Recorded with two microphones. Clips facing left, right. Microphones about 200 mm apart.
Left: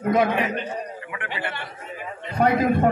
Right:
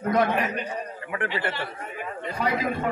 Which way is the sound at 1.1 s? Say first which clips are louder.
Right 5 dB; 40° right (ahead or behind).